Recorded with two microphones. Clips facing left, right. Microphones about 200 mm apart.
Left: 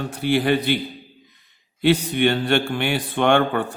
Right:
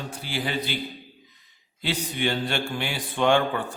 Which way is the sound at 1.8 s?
60° left (ahead or behind).